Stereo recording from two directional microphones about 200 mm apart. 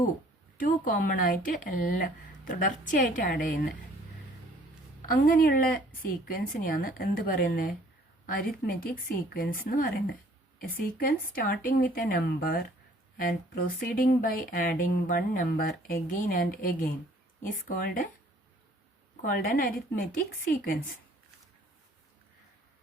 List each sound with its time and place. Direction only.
0.5 s speech: 40° left (ahead or behind)
5.0 s speech: 45° left (ahead or behind)
19.2 s speech: 45° left (ahead or behind)